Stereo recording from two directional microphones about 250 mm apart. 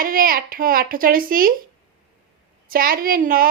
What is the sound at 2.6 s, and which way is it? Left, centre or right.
Speech, right.